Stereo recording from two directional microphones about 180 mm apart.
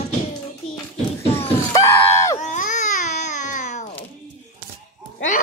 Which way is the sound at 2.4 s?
45° left (ahead or behind).